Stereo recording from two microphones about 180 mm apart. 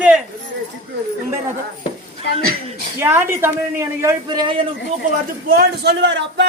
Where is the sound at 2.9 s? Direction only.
10° right (ahead or behind); by 4.7 s 25° right (ahead or behind).